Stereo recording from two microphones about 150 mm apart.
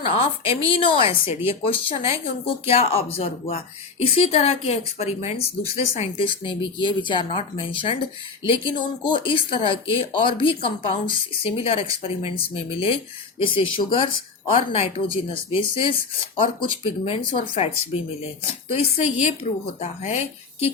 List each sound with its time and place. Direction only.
0.0 s speech: 35° left (ahead or behind)
14.7 s speech: 45° left (ahead or behind)